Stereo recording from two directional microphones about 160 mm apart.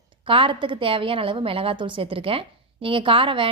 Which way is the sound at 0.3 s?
35° right (ahead or behind).